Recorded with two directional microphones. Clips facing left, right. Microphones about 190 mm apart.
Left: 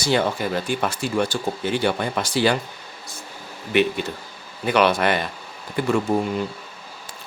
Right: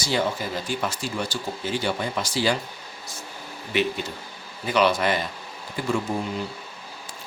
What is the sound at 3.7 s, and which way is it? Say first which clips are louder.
Speech: left 5 dB; 55° left (ahead or behind).